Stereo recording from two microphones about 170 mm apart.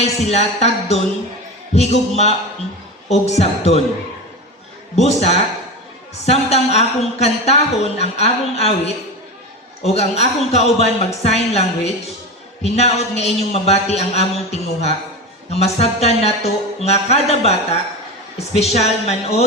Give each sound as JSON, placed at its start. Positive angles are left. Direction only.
{"t": 0.0, "sound": "a woman's voice", "side_deg": 40}
{"t": 4.9, "sound": "a woman's voice", "side_deg": 40}